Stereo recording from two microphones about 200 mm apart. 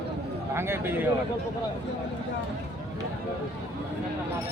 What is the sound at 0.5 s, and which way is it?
Speech, 10° right (ahead or behind).